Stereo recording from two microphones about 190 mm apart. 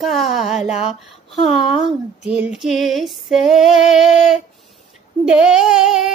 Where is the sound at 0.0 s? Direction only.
Centre (ahead or behind).